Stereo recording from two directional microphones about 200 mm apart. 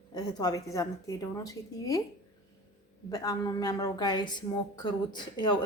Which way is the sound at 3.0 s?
20° left (ahead or behind).